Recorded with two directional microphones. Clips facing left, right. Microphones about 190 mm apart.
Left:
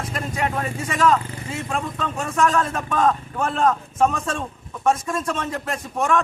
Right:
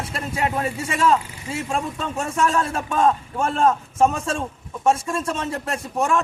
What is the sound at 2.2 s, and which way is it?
Speech, 30° right (ahead or behind).